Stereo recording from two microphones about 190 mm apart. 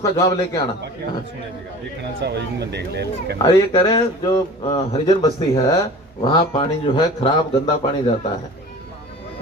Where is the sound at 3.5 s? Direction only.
25° left (ahead or behind).